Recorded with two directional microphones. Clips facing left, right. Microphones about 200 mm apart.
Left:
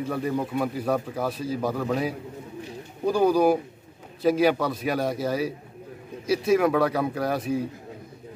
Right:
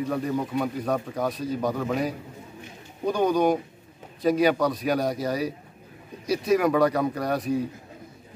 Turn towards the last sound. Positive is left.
turn(degrees=0)  # may be behind; listen again after turning